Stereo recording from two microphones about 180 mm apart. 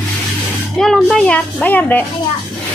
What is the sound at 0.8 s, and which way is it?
Speech, 5° left (ahead or behind).